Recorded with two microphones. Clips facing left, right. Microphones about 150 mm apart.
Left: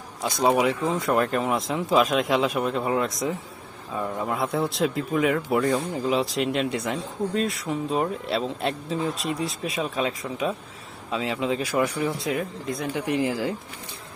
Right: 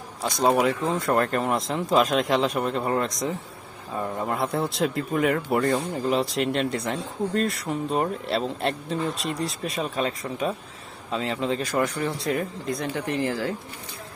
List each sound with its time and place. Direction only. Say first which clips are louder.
0.3 s speech: even; centre (ahead or behind)
12.9 s speech: left 4 dB; 15° left (ahead or behind)